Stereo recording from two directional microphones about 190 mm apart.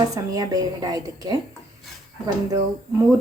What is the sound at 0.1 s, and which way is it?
A woman's voice, 20° right (ahead or behind).